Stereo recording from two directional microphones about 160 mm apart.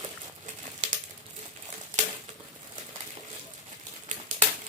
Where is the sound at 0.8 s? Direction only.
50° right (ahead or behind).